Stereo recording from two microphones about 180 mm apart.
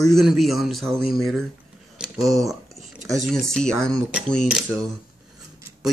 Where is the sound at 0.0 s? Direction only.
Centre (ahead or behind).